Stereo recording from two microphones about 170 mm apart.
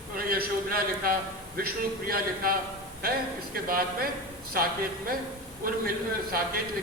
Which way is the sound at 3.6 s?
60° right (ahead or behind).